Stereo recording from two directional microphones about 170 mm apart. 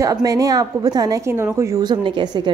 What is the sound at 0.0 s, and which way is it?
Speech, 20° right (ahead or behind).